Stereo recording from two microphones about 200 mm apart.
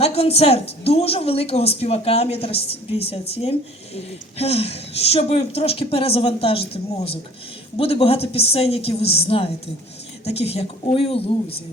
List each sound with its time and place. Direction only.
0.0 s a woman's voice: 30° left (ahead or behind)